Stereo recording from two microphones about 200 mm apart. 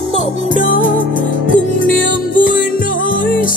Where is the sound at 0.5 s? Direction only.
45° left (ahead or behind).